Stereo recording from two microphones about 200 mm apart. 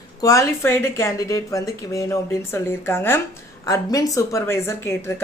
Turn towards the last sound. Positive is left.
turn(degrees=15)  # may be behind; listen again after turning